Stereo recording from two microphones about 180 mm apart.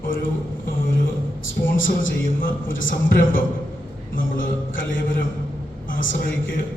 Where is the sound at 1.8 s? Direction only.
50° left (ahead or behind).